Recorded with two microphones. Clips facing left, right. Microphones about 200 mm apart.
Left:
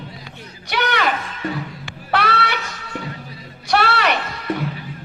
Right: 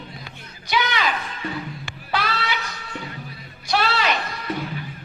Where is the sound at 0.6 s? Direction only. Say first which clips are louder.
Left 2 dB; 65° left (ahead or behind).